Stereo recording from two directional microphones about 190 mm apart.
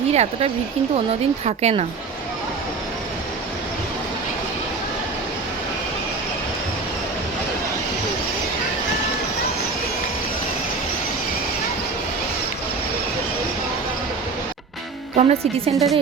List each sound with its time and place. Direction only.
0.1 s a woman's voice: 35° right (ahead or behind)
15.1 s a woman's voice: 35° right (ahead or behind)